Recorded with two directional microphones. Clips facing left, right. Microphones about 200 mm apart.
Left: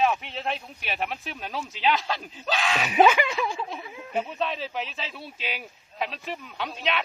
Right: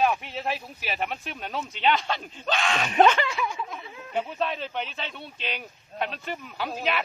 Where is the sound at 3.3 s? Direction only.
25° left (ahead or behind).